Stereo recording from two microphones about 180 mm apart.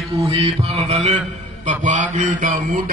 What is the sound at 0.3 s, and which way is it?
A man's voice, 30° right (ahead or behind).